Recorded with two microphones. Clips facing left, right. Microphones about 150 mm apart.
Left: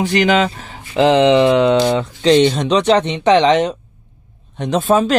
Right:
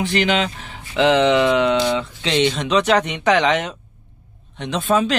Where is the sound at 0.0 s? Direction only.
40° left (ahead or behind).